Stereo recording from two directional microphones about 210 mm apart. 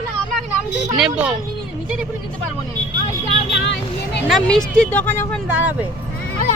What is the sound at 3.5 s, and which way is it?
Vehicle, 55° left (ahead or behind).